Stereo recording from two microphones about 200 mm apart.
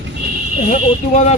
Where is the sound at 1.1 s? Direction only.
40° left (ahead or behind).